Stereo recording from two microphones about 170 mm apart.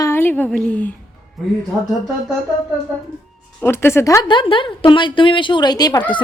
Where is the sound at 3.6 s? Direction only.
15° left (ahead or behind).